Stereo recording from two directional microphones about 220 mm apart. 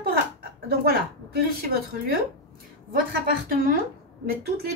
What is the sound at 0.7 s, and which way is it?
Speech, 45° right (ahead or behind).